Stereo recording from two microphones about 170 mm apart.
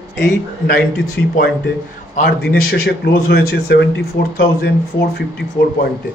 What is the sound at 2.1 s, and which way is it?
A man's voice, 60° left (ahead or behind).